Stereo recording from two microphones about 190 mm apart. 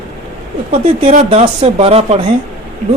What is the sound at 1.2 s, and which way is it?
Speech, 30° right (ahead or behind).